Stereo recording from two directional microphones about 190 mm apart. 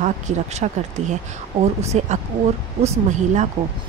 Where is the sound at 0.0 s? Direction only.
40° right (ahead or behind).